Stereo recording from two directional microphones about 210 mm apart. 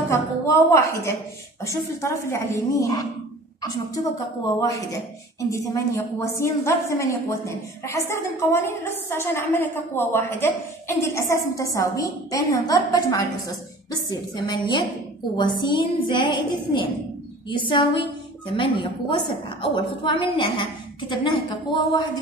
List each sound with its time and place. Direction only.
0.1 s a woman's voice: 15° left (ahead or behind)